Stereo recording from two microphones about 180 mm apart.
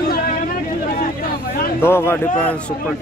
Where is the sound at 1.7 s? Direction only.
15° left (ahead or behind).